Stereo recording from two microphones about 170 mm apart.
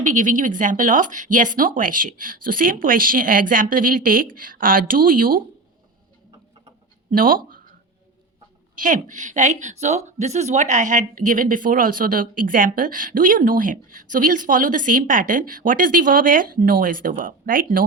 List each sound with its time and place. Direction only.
0.0 s a woman's voice: 45° right (ahead or behind)
7.1 s speech: 55° right (ahead or behind)
8.7 s a woman's voice: 50° right (ahead or behind)